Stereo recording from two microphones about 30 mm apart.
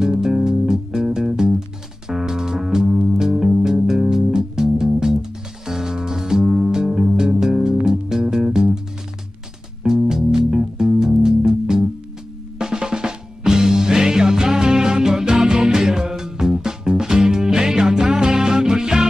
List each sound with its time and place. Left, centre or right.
0.0 s music: right
9.8 s music: centre